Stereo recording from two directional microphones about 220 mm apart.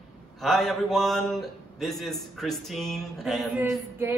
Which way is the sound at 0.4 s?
Centre (ahead or behind).